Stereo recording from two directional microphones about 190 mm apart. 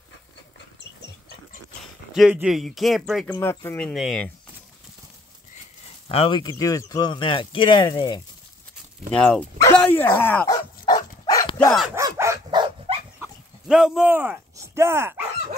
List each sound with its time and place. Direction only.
2.1 s speech: 5° right (ahead or behind)
3.3 s speech: 10° left (ahead or behind)
3.9 s speech: centre (ahead or behind)
6.0 s speech: 30° left (ahead or behind)
9.1 s speech: 5° left (ahead or behind)
9.8 s dog: 10° left (ahead or behind)
11.5 s speech: 5° left (ahead or behind)
11.9 s dog: 15° right (ahead or behind)
13.2 s a sound: 5° right (ahead or behind)